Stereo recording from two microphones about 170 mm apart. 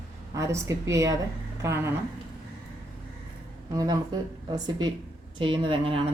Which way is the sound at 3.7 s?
20° right (ahead or behind).